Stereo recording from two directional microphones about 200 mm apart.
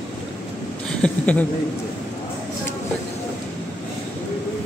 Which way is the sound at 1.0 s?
5° left (ahead or behind).